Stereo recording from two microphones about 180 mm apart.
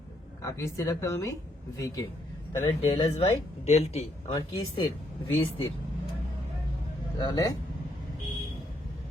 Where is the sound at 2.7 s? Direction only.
30° left (ahead or behind).